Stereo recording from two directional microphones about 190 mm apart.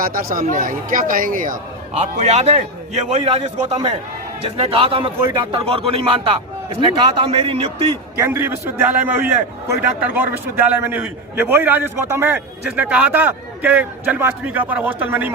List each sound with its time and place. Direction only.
0.0 s a man's voice: 50° right (ahead or behind)
2.0 s a man's voice: 35° right (ahead or behind)
8.2 s a man's voice: 10° right (ahead or behind)